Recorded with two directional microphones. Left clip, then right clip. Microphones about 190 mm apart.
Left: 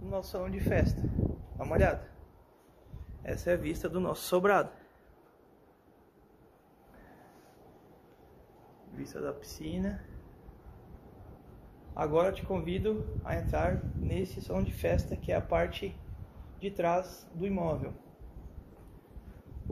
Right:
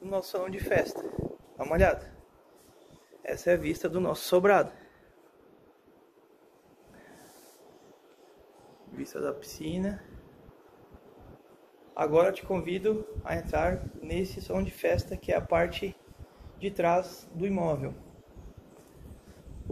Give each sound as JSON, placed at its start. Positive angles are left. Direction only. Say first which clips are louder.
{"t": 0.1, "sound": "a man's voice", "louder": "right 5 dB", "side_deg": -20}
{"t": 3.2, "sound": "a man's voice", "louder": "right 5 dB", "side_deg": 0}
{"t": 9.0, "sound": "speech", "louder": "right 4 dB", "side_deg": -5}
{"t": 11.9, "sound": "a man's voice", "louder": "right 4 dB", "side_deg": 0}